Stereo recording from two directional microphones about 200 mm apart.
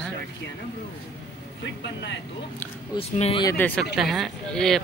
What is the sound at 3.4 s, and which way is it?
Speech, 15° left (ahead or behind).